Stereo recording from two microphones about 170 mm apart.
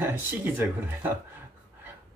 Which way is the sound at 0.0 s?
10° right (ahead or behind).